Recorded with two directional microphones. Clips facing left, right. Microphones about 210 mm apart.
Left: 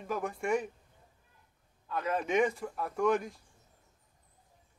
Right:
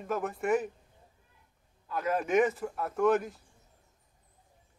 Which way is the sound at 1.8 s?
5° right (ahead or behind).